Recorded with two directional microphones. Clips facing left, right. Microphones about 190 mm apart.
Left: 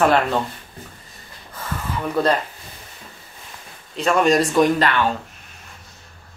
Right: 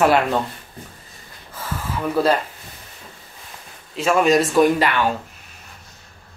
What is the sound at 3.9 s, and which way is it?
Speech, 5° right (ahead or behind).